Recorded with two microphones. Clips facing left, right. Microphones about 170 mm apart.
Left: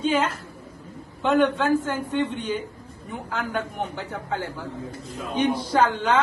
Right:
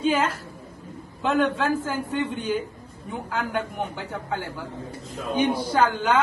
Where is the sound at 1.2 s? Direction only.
5° right (ahead or behind).